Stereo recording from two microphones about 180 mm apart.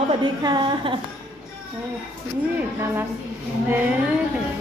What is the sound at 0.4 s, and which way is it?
Speech, 25° right (ahead or behind).